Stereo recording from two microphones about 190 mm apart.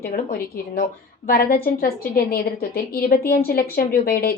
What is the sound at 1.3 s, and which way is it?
A woman's voice, 50° left (ahead or behind).